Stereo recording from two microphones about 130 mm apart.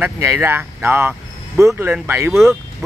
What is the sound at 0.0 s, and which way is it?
Speech, 20° right (ahead or behind).